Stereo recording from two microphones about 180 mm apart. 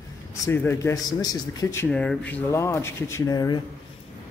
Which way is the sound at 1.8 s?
5° left (ahead or behind).